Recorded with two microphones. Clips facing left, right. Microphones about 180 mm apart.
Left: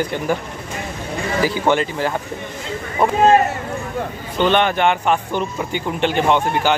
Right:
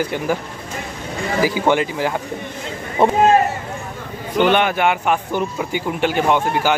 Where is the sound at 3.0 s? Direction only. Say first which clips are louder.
Right 3 dB; 25° right (ahead or behind).